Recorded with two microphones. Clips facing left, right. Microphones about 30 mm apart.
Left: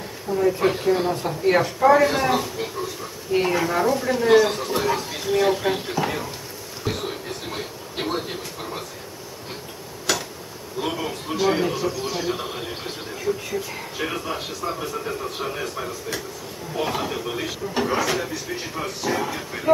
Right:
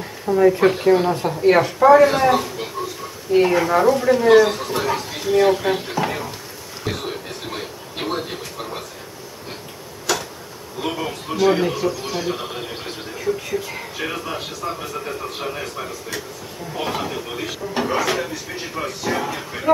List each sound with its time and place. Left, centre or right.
0.3 s speech: right
7.5 s a sound: centre
10.8 s speech: centre